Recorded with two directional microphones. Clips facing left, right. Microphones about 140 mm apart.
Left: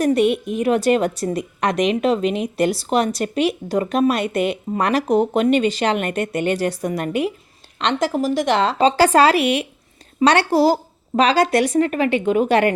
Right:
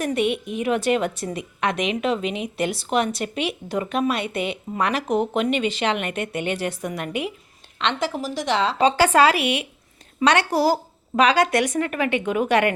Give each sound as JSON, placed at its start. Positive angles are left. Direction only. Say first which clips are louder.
{"t": 0.0, "sound": "a woman's voice", "louder": "left 6 dB", "side_deg": 40}
{"t": 8.8, "sound": "a woman's voice", "louder": "left 2 dB", "side_deg": 35}